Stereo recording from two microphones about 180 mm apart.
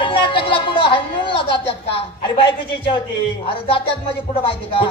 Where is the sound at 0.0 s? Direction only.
30° left (ahead or behind).